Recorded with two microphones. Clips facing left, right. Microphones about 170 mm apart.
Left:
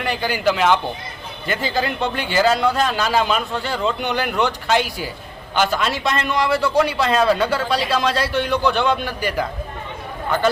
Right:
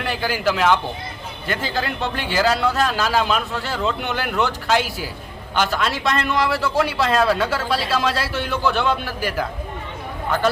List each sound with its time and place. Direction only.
0.0 s a man's voice: centre (ahead or behind)